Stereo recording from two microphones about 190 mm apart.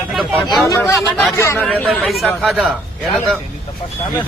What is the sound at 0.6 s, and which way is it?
Speech, 20° left (ahead or behind).